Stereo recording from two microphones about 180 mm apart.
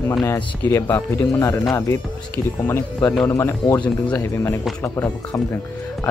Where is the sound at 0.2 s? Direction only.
15° left (ahead or behind).